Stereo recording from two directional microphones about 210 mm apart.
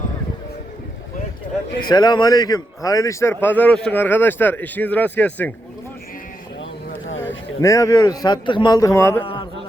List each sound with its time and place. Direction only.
1.9 s a man's voice: 20° left (ahead or behind)
7.6 s a man's voice: 15° left (ahead or behind)
9.2 s music: 25° left (ahead or behind)